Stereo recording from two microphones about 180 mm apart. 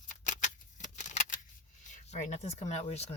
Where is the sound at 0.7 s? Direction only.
45° left (ahead or behind).